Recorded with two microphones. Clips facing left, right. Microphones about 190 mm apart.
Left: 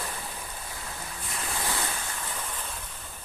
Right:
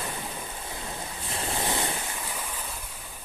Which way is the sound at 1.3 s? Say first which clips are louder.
Right 4 dB; 30° right (ahead or behind).